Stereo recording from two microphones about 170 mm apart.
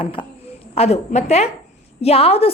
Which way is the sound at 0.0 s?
30° left (ahead or behind).